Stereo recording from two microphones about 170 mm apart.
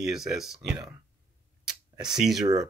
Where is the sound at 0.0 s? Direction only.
5° right (ahead or behind).